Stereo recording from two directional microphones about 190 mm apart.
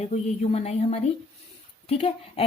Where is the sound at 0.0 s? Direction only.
35° left (ahead or behind).